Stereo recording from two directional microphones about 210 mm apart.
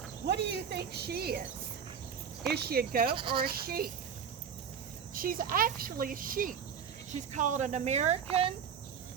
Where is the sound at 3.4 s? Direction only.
45° right (ahead or behind).